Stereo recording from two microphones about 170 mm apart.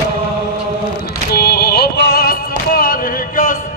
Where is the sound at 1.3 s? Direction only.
65° left (ahead or behind).